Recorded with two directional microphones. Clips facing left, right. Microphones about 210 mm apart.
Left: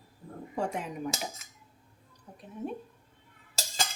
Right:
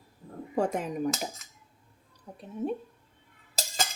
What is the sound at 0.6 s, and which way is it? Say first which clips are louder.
Speech: right 5 dB; 45° right (ahead or behind).